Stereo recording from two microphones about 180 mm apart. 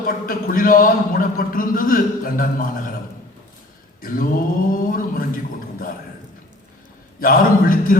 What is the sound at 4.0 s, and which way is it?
A man's voice, 50° left (ahead or behind).